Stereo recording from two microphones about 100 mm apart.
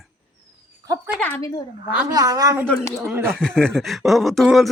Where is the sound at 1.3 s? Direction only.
35° left (ahead or behind).